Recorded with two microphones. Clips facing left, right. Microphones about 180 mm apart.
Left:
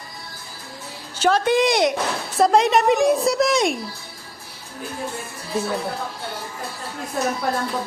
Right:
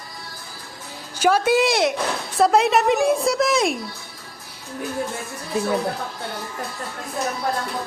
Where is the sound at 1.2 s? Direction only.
10° right (ahead or behind).